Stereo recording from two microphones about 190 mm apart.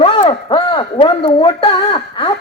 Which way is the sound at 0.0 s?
30° left (ahead or behind).